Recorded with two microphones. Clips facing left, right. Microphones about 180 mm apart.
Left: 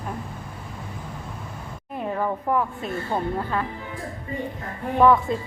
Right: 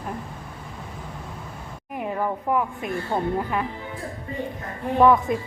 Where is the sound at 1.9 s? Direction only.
15° right (ahead or behind).